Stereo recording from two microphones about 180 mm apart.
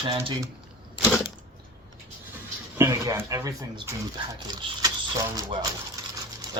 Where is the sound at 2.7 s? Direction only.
15° right (ahead or behind).